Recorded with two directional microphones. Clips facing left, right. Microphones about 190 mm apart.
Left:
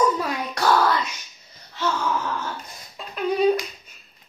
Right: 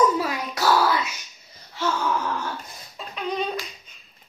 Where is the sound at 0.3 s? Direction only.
5° right (ahead or behind).